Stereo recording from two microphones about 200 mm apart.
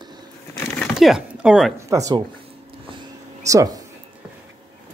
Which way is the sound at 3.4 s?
15° right (ahead or behind).